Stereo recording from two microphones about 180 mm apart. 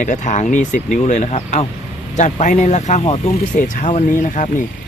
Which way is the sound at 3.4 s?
45° left (ahead or behind).